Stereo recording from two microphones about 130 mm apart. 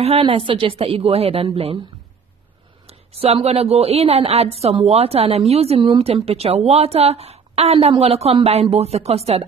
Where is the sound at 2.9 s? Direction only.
50° right (ahead or behind).